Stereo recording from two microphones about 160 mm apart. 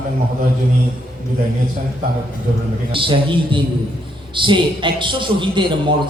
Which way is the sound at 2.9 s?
30° right (ahead or behind).